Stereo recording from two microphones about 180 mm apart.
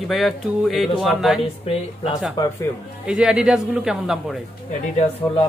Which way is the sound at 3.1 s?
5° right (ahead or behind).